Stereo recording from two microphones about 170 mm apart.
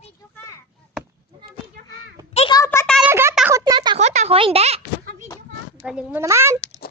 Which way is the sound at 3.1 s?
15° right (ahead or behind).